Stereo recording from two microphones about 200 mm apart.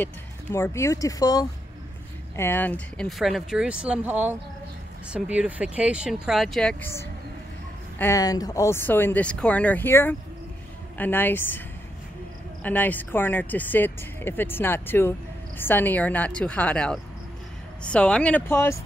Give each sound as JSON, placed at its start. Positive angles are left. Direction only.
{"t": 0.0, "sound": "speech", "side_deg": 15}
{"t": 12.6, "sound": "speech", "side_deg": 10}